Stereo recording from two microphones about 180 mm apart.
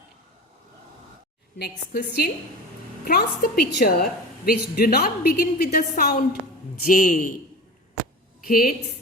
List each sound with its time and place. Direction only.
1.5 s a woman's voice: 65° left (ahead or behind)
3.0 s a woman's voice: 55° left (ahead or behind)
8.4 s a man's voice: 55° left (ahead or behind)